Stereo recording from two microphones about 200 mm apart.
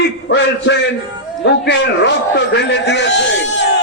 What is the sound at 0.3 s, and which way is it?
A man's voice, 65° left (ahead or behind).